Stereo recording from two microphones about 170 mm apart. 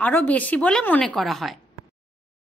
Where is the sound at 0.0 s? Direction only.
10° left (ahead or behind).